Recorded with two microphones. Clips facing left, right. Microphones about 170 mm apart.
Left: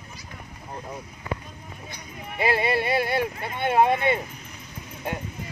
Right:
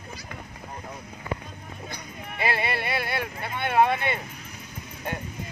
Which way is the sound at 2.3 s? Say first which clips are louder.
Left 5 dB; 20° left (ahead or behind).